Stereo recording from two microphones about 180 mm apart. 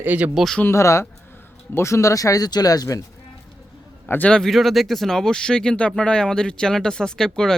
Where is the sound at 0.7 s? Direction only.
15° left (ahead or behind).